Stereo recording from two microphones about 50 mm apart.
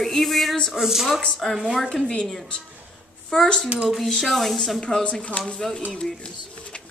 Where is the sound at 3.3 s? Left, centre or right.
Centre.